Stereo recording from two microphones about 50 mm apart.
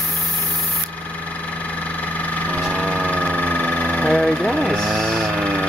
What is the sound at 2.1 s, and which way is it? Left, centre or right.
Engine, left.